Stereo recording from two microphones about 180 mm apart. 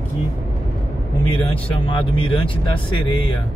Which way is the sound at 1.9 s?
30° left (ahead or behind).